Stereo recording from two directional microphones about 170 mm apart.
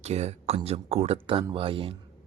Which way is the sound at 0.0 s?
40° right (ahead or behind).